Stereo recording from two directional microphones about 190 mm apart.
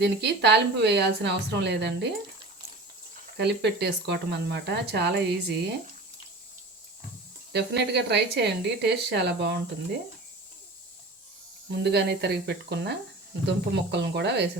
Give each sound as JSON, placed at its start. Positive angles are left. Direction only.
{"t": 0.0, "sound": "speech", "side_deg": -65}
{"t": 3.3, "sound": "speech", "side_deg": -60}
{"t": 7.5, "sound": "speech", "side_deg": -60}
{"t": 11.7, "sound": "speech", "side_deg": -60}